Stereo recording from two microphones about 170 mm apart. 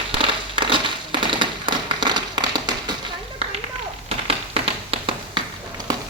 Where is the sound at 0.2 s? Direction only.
30° right (ahead or behind).